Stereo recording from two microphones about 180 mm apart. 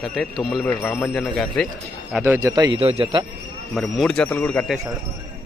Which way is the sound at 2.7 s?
35° right (ahead or behind).